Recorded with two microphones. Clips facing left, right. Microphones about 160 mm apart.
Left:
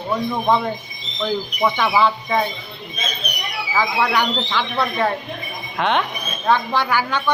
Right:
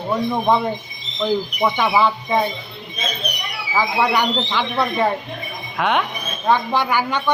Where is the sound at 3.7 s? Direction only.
15° right (ahead or behind).